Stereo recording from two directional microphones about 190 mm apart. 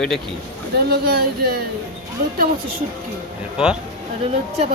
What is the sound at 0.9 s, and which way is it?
Speech, 55° right (ahead or behind).